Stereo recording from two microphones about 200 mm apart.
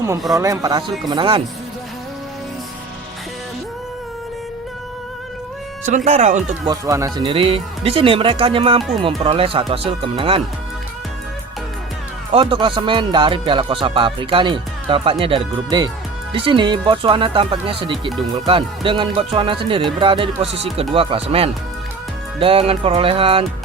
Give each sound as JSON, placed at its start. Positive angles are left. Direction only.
{"t": 0.3, "sound": "speech", "side_deg": -15}
{"t": 6.1, "sound": "speech", "side_deg": -35}
{"t": 6.7, "sound": "speech", "side_deg": -15}
{"t": 12.3, "sound": "speech", "side_deg": -25}